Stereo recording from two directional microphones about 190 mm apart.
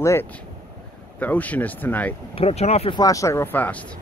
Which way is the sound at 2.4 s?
35° left (ahead or behind).